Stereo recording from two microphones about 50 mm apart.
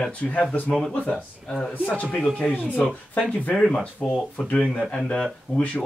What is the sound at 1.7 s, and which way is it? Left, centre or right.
Speech, left.